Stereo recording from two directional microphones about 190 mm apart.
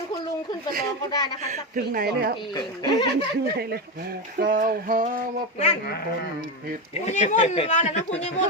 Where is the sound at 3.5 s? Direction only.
55° right (ahead or behind).